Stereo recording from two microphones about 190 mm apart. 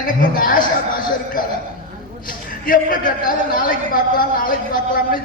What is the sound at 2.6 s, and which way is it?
A woman's voice, 45° left (ahead or behind).